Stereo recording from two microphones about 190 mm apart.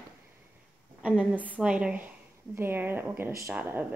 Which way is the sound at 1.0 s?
5° right (ahead or behind).